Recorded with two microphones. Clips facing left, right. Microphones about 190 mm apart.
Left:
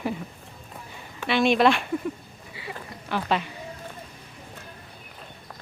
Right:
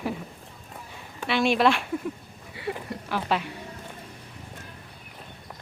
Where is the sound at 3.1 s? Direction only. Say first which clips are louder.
Left 1 dB; 5° right (ahead or behind).